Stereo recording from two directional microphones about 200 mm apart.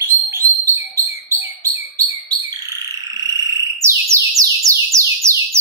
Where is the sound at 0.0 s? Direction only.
10° right (ahead or behind).